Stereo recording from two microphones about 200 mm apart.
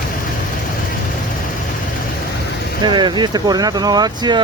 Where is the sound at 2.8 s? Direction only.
20° right (ahead or behind).